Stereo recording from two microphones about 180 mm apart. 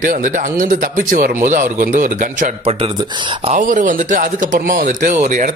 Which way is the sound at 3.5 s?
45° right (ahead or behind).